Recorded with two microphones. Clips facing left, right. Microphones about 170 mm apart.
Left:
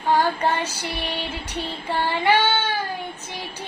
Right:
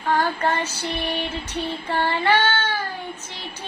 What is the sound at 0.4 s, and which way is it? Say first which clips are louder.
Female singing: even; 15° left (ahead or behind).